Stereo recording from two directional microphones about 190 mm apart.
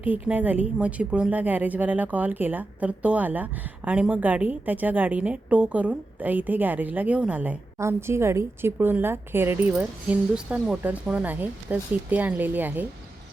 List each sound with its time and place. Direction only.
0.0 s speech: 10° right (ahead or behind)